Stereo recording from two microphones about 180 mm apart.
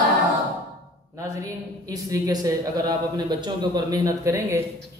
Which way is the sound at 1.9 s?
20° right (ahead or behind).